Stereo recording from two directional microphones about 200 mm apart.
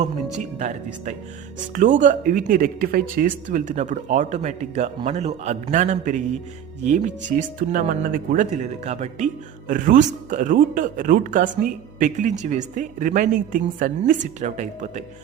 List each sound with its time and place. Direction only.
1.7 s speech: 40° right (ahead or behind)